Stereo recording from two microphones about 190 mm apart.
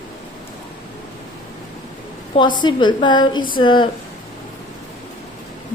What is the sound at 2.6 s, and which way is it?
A woman's voice, 25° left (ahead or behind).